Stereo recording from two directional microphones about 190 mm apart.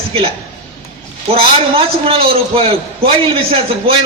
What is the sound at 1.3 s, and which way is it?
Speech, 30° right (ahead or behind).